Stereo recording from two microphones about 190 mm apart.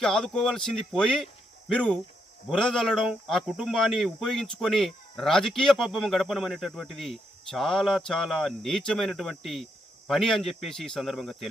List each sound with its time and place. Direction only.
0.0 s speech: 5° left (ahead or behind)